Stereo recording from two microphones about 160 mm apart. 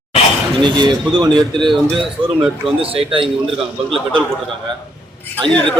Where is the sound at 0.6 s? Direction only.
25° right (ahead or behind).